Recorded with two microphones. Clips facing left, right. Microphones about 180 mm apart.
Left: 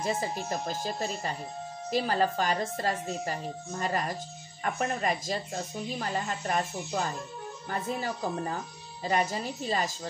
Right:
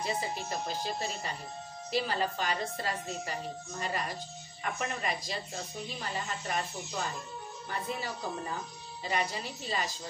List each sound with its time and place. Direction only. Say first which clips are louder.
0.0 s speech: left 3 dB; 45° left (ahead or behind)
4.6 s speech: left 5 dB; 45° left (ahead or behind)